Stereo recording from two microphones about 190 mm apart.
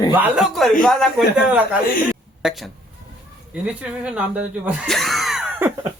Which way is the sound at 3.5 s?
5° right (ahead or behind).